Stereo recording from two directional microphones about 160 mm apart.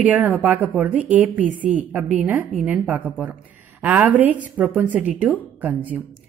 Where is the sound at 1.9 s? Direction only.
10° right (ahead or behind).